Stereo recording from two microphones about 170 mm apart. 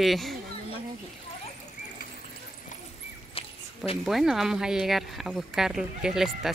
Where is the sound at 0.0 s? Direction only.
Centre (ahead or behind).